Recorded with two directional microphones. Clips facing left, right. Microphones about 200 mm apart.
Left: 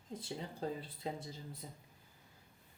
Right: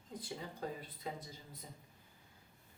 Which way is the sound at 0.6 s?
30° left (ahead or behind).